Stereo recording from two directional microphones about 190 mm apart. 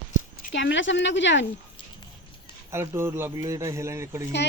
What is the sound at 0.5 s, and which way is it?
Speech, 75° left (ahead or behind).